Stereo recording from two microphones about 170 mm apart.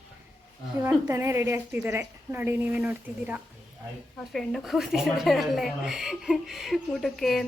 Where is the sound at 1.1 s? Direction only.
15° right (ahead or behind).